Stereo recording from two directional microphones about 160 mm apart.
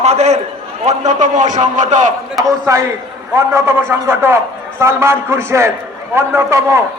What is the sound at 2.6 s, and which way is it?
A man's voice, 20° right (ahead or behind).